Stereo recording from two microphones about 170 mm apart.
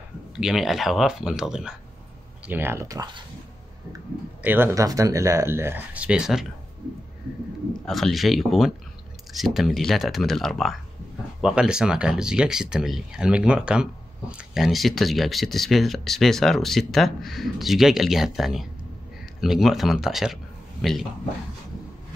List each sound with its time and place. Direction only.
0.4 s speech: centre (ahead or behind); by 3.3 s 25° right (ahead or behind)
4.4 s speech: 10° right (ahead or behind)
7.8 s speech: centre (ahead or behind)